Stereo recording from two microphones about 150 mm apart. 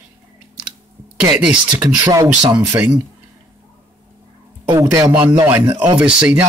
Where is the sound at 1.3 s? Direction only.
5° right (ahead or behind).